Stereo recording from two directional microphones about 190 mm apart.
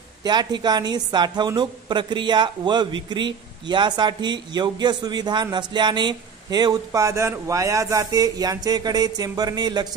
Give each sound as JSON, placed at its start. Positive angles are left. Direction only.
{"t": 0.2, "sound": "a woman's voice", "side_deg": -20}